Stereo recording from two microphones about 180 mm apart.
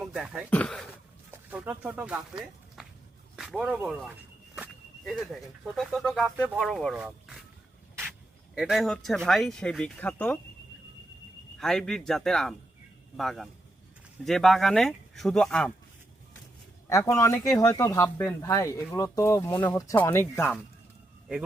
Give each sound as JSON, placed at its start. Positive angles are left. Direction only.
{"t": 0.0, "sound": "a sound", "side_deg": 0}
{"t": 0.5, "sound": "speech", "side_deg": 5}
{"t": 1.3, "sound": "a sound", "side_deg": -10}
{"t": 1.8, "sound": "speech", "side_deg": -10}
{"t": 2.8, "sound": "walk", "side_deg": -5}
{"t": 3.3, "sound": "speech", "side_deg": 0}
{"t": 8.5, "sound": "speech", "side_deg": 0}
{"t": 11.6, "sound": "speech", "side_deg": 5}
{"t": 16.9, "sound": "speech", "side_deg": 15}